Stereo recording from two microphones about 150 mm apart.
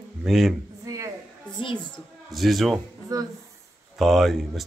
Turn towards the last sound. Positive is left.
turn(degrees=0)  # may be behind; listen again after turning